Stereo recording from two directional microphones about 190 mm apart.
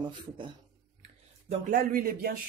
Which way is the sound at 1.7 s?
50° right (ahead or behind).